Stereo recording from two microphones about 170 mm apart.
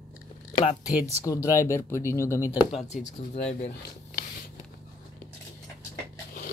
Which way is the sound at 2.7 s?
40° left (ahead or behind).